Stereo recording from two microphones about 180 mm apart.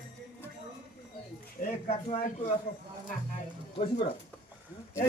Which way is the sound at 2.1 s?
30° left (ahead or behind).